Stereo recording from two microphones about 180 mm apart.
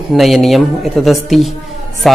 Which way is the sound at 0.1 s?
Centre (ahead or behind).